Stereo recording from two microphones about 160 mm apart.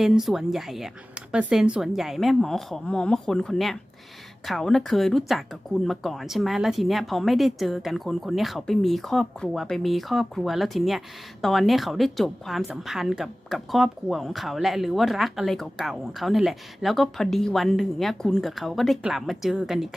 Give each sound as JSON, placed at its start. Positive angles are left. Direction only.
{"t": 0.0, "sound": "a woman's voice", "side_deg": 0}